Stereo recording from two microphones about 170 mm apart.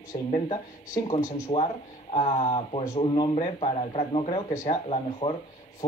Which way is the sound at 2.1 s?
35° left (ahead or behind).